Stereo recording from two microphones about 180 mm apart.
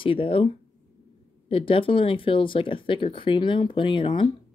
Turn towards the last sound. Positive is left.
turn(degrees=25)  # may be behind; listen again after turning